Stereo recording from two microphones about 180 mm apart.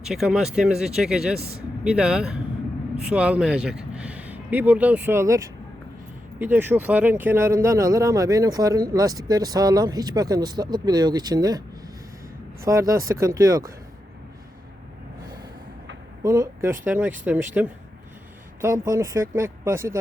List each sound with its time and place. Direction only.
0.1 s speech: centre (ahead or behind); by 11.6 s 20° right (ahead or behind)
12.6 s speech: 20° right (ahead or behind)
15.2 s gasp: 20° right (ahead or behind)
16.2 s speech: 15° right (ahead or behind)